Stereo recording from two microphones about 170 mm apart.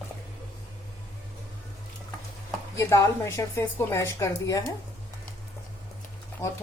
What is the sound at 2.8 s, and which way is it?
A woman's voice, 15° left (ahead or behind).